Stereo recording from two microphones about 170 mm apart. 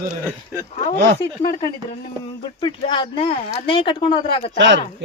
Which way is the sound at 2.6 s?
30° left (ahead or behind).